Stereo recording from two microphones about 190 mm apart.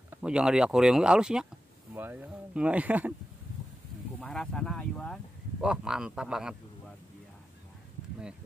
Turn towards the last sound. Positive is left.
turn(degrees=-5)  # may be behind; listen again after turning